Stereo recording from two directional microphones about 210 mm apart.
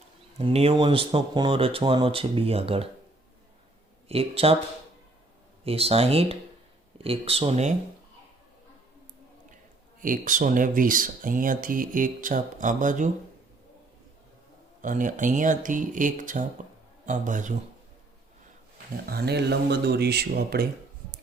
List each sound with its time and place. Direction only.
0.3 s speech: 30° right (ahead or behind)
4.1 s speech: 25° right (ahead or behind)
5.6 s speech: 30° right (ahead or behind)
10.0 s speech: 40° right (ahead or behind)
14.8 s speech: 40° right (ahead or behind)
19.0 s speech: 50° right (ahead or behind)